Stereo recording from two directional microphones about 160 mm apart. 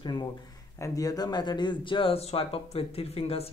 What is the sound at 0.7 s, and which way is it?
Speech, 20° left (ahead or behind).